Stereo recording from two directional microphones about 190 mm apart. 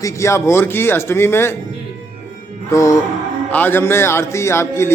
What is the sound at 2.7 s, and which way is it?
A man's voice, 15° left (ahead or behind).